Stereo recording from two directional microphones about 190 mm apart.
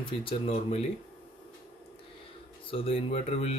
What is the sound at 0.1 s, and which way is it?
Speech, 30° left (ahead or behind).